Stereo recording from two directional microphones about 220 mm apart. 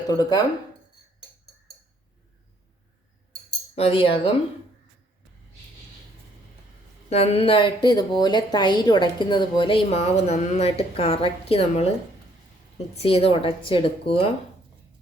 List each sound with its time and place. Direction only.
0.1 s speech: 15° left (ahead or behind)
3.8 s a woman's voice: 25° left (ahead or behind)
7.1 s a woman's voice: 30° left (ahead or behind)
12.9 s a woman's voice: 25° left (ahead or behind)